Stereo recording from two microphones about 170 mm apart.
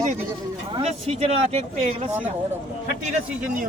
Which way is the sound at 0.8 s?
35° right (ahead or behind).